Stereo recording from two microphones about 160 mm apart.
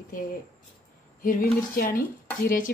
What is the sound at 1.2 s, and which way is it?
A woman's voice, 60° left (ahead or behind).